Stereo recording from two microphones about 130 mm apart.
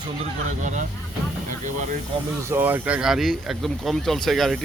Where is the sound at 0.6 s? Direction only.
70° right (ahead or behind).